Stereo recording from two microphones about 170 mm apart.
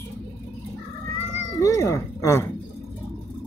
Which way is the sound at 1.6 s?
20° left (ahead or behind).